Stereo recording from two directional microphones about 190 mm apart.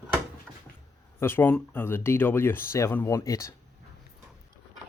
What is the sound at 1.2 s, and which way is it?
Speech, 10° left (ahead or behind).